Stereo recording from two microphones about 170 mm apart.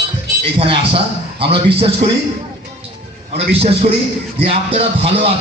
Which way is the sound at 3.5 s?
35° right (ahead or behind).